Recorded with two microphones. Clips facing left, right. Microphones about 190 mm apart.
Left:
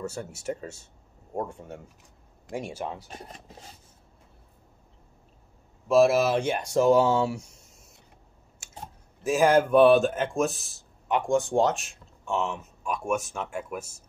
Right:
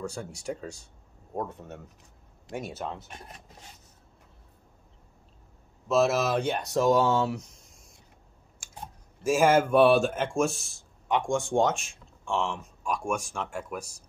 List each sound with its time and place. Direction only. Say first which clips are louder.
0.0 s speech: left 2 dB; 5° left (ahead or behind)
3.1 s filing: left 3 dB; 30° left (ahead or behind)
5.9 s speech: left 4 dB; 10° left (ahead or behind)
9.2 s speech: left 1 dB; centre (ahead or behind)